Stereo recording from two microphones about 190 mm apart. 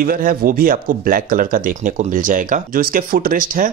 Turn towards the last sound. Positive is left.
turn(degrees=-45)  # may be behind; listen again after turning